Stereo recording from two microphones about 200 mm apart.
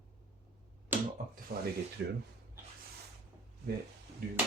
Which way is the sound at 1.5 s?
50° right (ahead or behind).